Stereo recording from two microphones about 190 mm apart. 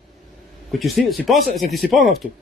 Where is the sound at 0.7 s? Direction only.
Centre (ahead or behind).